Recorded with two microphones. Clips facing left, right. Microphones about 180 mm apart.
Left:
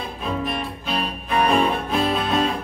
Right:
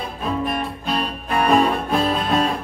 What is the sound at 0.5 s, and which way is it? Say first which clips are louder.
Music: right 3 dB; 45° right (ahead or behind).